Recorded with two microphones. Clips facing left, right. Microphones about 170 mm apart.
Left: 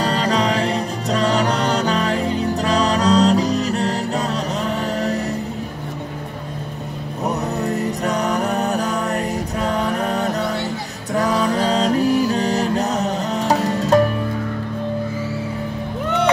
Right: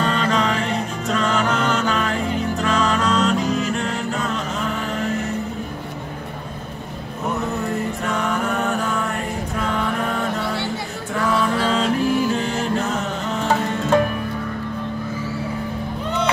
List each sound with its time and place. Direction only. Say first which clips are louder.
0.0 s music: left 1 dB; 35° left (ahead or behind)
7.2 s music: left 2 dB; 40° left (ahead or behind)